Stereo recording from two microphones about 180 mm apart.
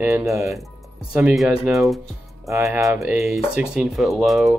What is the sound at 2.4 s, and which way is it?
Speech, 15° right (ahead or behind).